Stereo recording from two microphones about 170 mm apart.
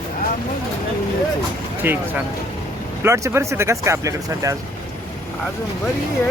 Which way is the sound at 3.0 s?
15° right (ahead or behind).